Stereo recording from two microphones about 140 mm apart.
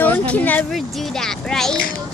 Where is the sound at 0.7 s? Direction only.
Centre (ahead or behind).